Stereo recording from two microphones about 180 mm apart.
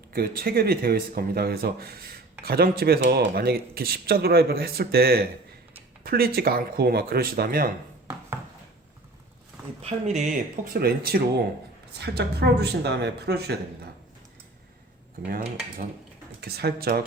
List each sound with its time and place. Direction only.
0.1 s speech: 55° right (ahead or behind)
9.8 s speech: 40° right (ahead or behind)
10.7 s speech: 60° right (ahead or behind)
16.4 s speech: 60° right (ahead or behind)